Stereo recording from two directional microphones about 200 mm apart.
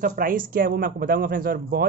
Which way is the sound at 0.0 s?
45° right (ahead or behind).